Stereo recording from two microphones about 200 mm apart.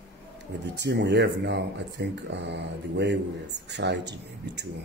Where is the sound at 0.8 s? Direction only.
55° right (ahead or behind).